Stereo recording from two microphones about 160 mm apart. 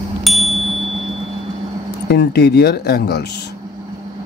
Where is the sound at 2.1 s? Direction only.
90° left.